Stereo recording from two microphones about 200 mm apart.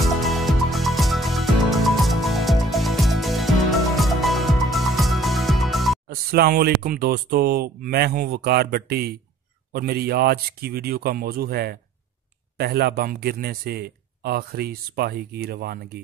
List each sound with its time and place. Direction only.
0.0 s music: centre (ahead or behind)
6.0 s speech: 50° right (ahead or behind)